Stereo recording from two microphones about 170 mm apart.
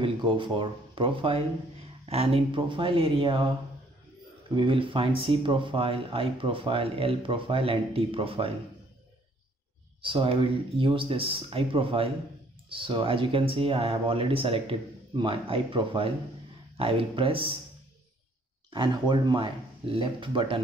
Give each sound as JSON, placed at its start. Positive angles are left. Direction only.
{"t": 0.0, "sound": "speech", "side_deg": -30}
{"t": 4.6, "sound": "speech", "side_deg": -30}
{"t": 10.0, "sound": "speech", "side_deg": -30}
{"t": 18.7, "sound": "speech", "side_deg": -25}